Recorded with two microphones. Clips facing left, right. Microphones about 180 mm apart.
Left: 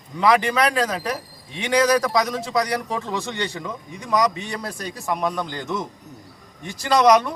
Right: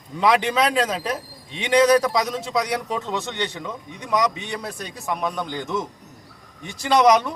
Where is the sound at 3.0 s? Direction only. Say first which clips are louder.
Even; 5° left (ahead or behind).